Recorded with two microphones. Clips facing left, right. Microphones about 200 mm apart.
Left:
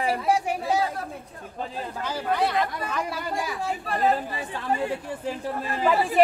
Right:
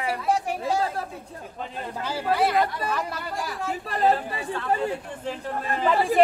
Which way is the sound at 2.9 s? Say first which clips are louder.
Even; centre (ahead or behind).